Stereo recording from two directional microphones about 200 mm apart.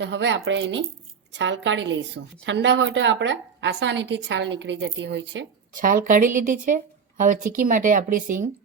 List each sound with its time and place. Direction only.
0.0 s a woman's voice: 65° right (ahead or behind)
5.7 s a woman's voice: 45° right (ahead or behind)